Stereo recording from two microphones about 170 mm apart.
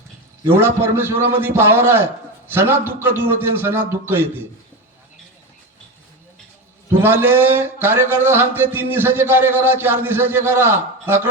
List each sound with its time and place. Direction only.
0.5 s speech: 15° right (ahead or behind)
7.0 s speech: 10° right (ahead or behind)